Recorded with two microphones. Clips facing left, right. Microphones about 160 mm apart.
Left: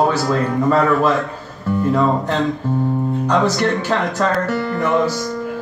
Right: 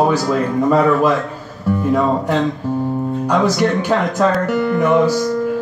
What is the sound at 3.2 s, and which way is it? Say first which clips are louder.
Speech: right 2 dB; 10° right (ahead or behind).